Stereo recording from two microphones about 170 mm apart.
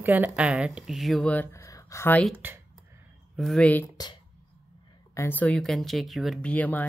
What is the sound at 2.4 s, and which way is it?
Speech, 10° right (ahead or behind).